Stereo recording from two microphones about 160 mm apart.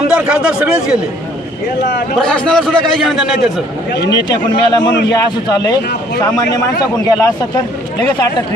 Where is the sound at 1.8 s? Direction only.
90° left.